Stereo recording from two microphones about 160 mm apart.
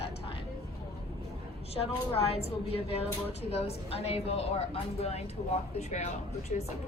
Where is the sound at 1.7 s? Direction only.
40° left (ahead or behind).